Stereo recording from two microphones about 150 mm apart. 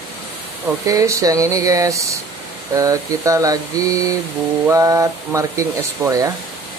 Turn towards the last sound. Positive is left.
turn(degrees=-20)  # may be behind; listen again after turning